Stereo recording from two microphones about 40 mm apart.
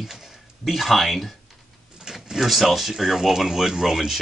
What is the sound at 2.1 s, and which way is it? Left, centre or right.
Door, centre.